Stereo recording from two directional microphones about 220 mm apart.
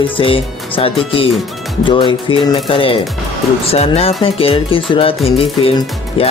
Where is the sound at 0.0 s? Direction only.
25° left (ahead or behind).